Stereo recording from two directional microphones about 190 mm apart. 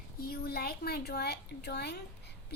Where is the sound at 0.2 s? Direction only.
55° left (ahead or behind).